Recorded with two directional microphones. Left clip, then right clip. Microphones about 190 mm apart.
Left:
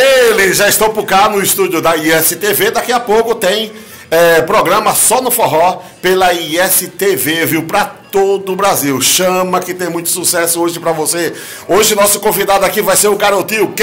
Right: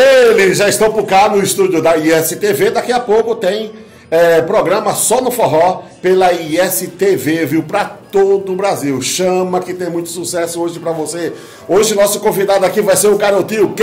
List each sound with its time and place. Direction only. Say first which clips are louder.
0.0 s a man's voice: right 1 dB; centre (ahead or behind)
5.2 s chopping: right 1 dB; 25° left (ahead or behind)
5.7 s a man's voice: even; centre (ahead or behind)